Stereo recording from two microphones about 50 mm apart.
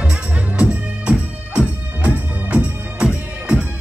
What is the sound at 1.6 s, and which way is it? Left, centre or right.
Music, right.